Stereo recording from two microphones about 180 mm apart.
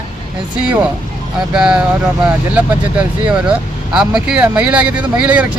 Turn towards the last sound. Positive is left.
turn(degrees=-5)  # may be behind; listen again after turning